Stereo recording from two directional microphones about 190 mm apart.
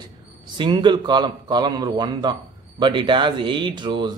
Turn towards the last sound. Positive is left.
turn(degrees=-25)  # may be behind; listen again after turning